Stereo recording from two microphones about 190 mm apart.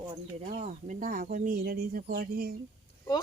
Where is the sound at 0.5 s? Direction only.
40° right (ahead or behind).